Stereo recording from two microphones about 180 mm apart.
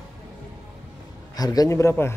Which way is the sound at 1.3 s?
20° left (ahead or behind).